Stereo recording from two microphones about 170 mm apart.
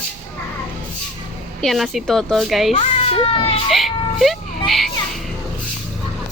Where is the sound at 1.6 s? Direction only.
Centre (ahead or behind).